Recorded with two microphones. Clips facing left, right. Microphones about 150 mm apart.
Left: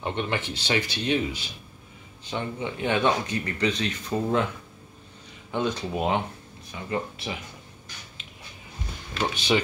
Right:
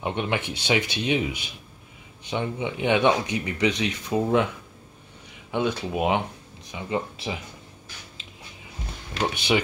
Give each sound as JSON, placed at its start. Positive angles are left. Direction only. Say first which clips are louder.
{"t": 0.0, "sound": "speech", "louder": "right 2 dB", "side_deg": -15}
{"t": 5.5, "sound": "speech", "louder": "right 2 dB", "side_deg": -5}
{"t": 9.2, "sound": "speech", "louder": "right 1 dB", "side_deg": -10}